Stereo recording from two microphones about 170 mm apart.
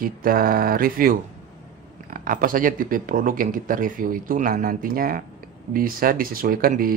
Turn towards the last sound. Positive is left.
turn(degrees=-60)  # may be behind; listen again after turning